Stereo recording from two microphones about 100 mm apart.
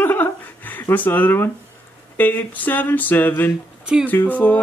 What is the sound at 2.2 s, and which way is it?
Mantra, 15° left (ahead or behind).